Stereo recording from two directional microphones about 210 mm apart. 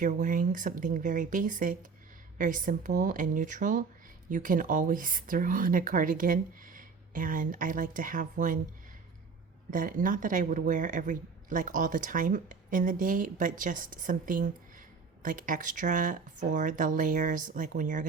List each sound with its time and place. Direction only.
0.0 s speech: 40° right (ahead or behind)
9.6 s speech: 40° right (ahead or behind)